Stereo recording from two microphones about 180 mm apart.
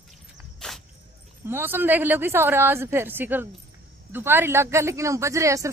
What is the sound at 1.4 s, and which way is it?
Speech, 10° right (ahead or behind).